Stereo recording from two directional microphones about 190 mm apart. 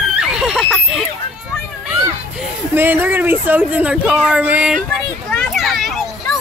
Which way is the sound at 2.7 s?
10° right (ahead or behind).